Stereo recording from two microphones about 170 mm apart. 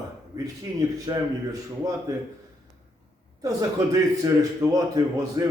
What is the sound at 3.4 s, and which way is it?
A man's voice, 20° right (ahead or behind).